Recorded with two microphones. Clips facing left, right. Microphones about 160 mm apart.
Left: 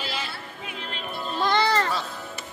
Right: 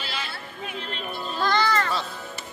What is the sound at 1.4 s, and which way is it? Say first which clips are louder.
Music: left 1 dB; 25° left (ahead or behind).